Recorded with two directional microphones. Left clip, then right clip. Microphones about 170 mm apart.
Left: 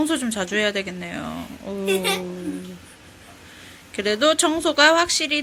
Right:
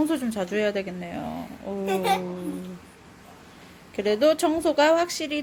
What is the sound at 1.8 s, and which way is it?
Speech, 35° right (ahead or behind).